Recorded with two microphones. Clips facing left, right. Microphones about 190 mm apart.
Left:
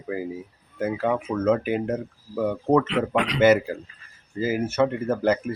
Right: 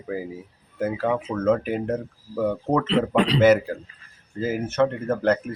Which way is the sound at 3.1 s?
30° right (ahead or behind).